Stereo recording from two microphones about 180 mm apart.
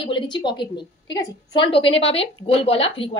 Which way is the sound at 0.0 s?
25° left (ahead or behind).